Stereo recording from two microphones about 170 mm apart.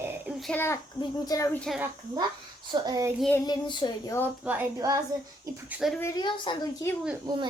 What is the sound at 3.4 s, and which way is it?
Speech, 25° left (ahead or behind).